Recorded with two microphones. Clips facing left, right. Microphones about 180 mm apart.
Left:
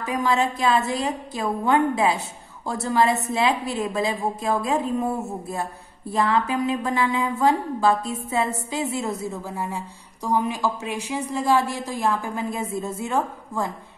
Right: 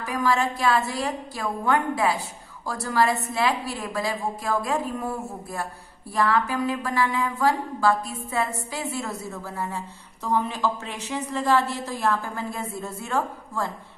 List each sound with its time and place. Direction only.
0.0 s a woman's voice: 20° left (ahead or behind)